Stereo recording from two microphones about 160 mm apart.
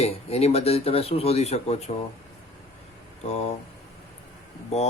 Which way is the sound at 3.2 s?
45° left (ahead or behind).